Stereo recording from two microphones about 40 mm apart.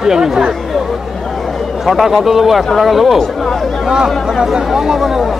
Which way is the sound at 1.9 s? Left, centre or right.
Centre.